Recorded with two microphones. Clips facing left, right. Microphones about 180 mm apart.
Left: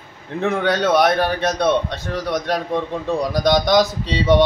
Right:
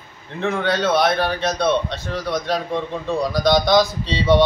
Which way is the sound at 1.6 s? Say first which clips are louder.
Even; 15° left (ahead or behind).